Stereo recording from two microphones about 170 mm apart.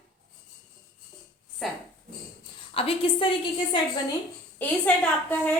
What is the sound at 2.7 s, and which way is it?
A woman's voice, 35° left (ahead or behind).